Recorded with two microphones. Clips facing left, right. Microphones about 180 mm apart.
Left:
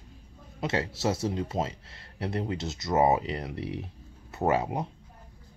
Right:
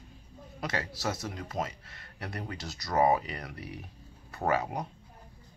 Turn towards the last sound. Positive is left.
turn(degrees=25)  # may be behind; listen again after turning